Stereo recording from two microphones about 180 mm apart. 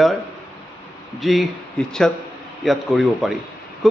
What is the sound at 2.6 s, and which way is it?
Speech, centre (ahead or behind).